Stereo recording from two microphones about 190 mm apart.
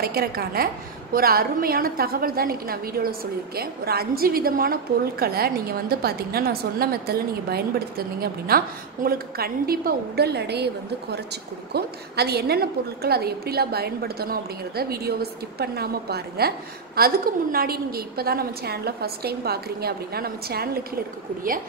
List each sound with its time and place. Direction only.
0.0 s a woman's voice: 55° right (ahead or behind)